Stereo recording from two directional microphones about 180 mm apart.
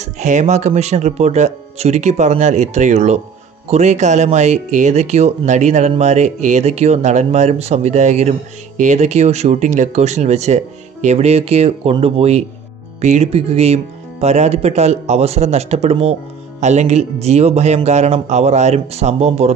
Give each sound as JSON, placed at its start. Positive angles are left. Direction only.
{"t": 0.0, "sound": "speech", "side_deg": -40}